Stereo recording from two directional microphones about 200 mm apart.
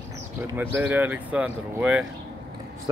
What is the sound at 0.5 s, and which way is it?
Speech, 10° right (ahead or behind).